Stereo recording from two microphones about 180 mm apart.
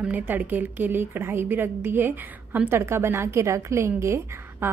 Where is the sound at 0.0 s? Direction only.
10° right (ahead or behind).